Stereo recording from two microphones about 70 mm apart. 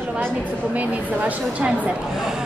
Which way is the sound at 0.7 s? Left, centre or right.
Right.